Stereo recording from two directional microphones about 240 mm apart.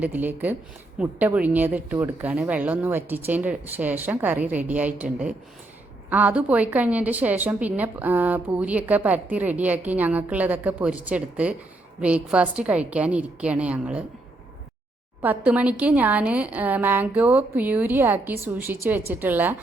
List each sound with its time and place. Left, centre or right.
0.0 s a woman's voice: centre
6.1 s a woman's voice: centre
15.2 s a woman's voice: centre